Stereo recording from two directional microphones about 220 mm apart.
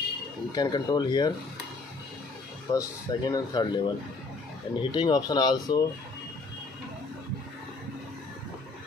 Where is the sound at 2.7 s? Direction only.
15° left (ahead or behind).